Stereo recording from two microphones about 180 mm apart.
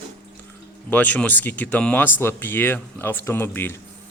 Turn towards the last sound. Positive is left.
turn(degrees=10)  # may be behind; listen again after turning